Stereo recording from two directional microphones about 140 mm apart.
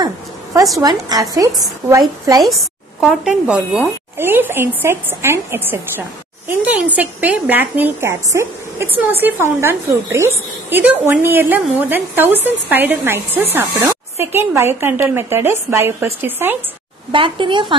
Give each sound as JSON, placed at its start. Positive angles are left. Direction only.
{"t": 0.0, "sound": "a sound", "side_deg": -25}
{"t": 0.7, "sound": "a woman's voice", "side_deg": -25}
{"t": 2.4, "sound": "a woman's voice", "side_deg": 0}
{"t": 17.1, "sound": "speech", "side_deg": -35}